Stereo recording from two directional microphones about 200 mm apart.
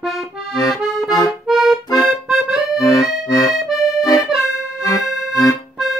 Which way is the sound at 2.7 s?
15° left (ahead or behind).